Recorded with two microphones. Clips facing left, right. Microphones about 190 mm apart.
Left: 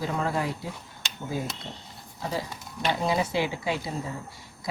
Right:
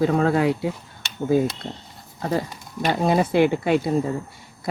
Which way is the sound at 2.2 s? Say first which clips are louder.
Right 7 dB; 60° right (ahead or behind).